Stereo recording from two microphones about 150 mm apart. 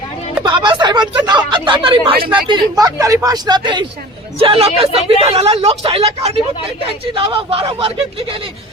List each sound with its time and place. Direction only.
0.4 s a woman's voice: 30° right (ahead or behind)